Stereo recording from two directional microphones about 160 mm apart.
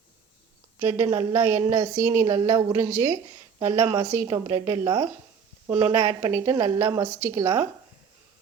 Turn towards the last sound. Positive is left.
turn(degrees=-15)  # may be behind; listen again after turning